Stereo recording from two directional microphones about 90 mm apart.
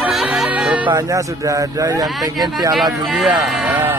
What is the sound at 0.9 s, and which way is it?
Speech, 35° right (ahead or behind).